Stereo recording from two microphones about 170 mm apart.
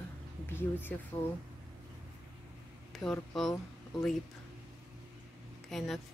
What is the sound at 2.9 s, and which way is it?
Speech, centre (ahead or behind).